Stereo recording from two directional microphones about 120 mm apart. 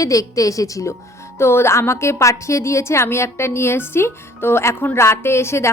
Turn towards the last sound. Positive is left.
turn(degrees=20)  # may be behind; listen again after turning